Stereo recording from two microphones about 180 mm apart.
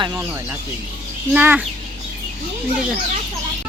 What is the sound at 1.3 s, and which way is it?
Speech, 10° right (ahead or behind).